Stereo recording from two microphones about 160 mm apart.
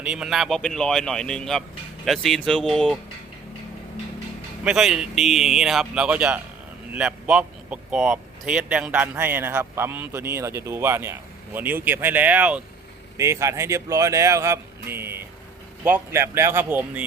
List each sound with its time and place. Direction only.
0.0 s speech: 5° right (ahead or behind)
4.6 s a man's voice: 5° right (ahead or behind)
13.1 s a man's voice: 20° right (ahead or behind)